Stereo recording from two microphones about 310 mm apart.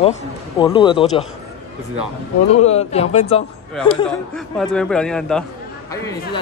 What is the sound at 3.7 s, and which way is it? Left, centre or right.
A man's voice, centre.